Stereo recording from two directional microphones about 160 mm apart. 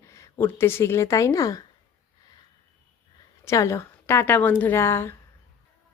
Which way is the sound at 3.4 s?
20° left (ahead or behind).